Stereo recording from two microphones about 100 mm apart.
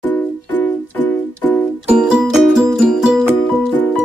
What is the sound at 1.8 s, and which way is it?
Music, 5° right (ahead or behind).